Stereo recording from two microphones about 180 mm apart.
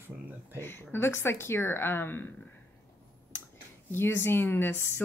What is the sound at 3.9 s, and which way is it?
Speech, 15° left (ahead or behind).